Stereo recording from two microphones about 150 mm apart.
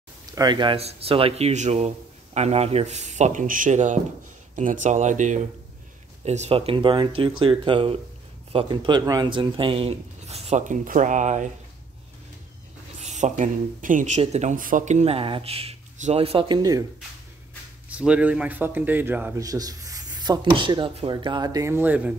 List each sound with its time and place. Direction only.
0.3 s speech: 30° right (ahead or behind); by 11.5 s 55° right (ahead or behind)
13.0 s speech: 55° right (ahead or behind)
14.2 s speech: 50° right (ahead or behind); by 16.8 s 25° right (ahead or behind)
17.8 s speech: 10° right (ahead or behind)
19.4 s speech: 25° right (ahead or behind)